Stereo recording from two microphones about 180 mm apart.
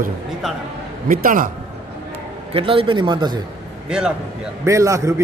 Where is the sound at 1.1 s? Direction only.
50° right (ahead or behind).